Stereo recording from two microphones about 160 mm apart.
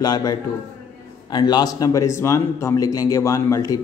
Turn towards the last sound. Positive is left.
turn(degrees=20)  # may be behind; listen again after turning